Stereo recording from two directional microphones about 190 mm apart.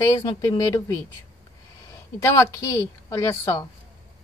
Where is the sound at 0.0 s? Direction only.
25° left (ahead or behind).